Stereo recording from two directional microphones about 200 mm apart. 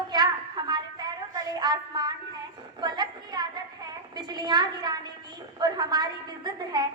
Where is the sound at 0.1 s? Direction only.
20° right (ahead or behind).